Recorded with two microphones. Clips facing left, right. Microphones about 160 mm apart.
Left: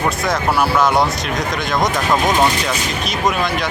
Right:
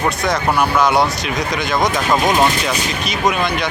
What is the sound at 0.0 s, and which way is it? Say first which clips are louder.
Speech: right 1 dB; centre (ahead or behind).